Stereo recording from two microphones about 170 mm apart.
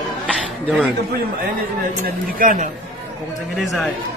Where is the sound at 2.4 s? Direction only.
55° right (ahead or behind).